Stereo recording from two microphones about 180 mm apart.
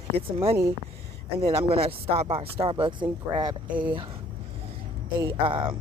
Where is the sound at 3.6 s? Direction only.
10° right (ahead or behind).